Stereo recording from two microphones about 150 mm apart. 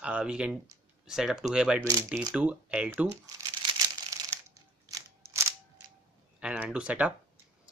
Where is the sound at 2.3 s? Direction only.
10° right (ahead or behind).